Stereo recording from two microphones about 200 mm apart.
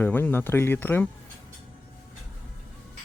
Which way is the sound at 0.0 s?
10° left (ahead or behind).